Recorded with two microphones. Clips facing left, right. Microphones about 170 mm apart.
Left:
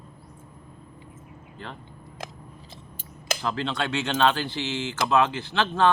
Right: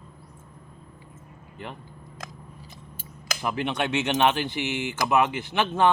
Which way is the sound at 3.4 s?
15° right (ahead or behind).